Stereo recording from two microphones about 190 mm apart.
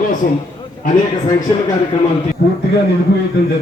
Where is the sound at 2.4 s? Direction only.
55° left (ahead or behind).